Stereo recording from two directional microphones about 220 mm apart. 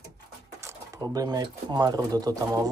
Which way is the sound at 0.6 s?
15° right (ahead or behind).